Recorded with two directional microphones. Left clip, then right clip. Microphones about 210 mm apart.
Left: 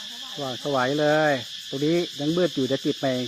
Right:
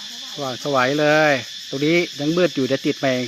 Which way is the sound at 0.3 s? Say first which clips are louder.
Right 5 dB; 15° right (ahead or behind).